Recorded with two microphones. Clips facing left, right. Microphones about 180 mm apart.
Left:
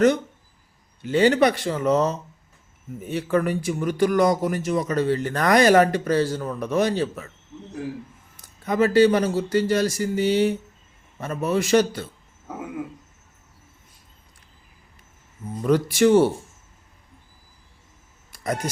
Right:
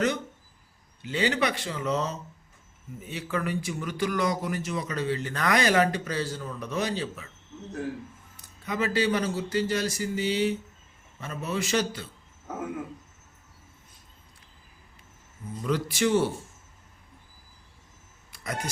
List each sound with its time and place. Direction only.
1.0 s speech: 50° left (ahead or behind)
8.6 s speech: 50° left (ahead or behind)
15.6 s speech: 50° left (ahead or behind)
18.4 s speech: 45° left (ahead or behind)